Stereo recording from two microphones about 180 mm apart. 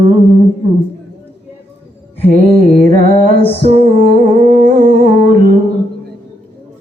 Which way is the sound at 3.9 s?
55° right (ahead or behind).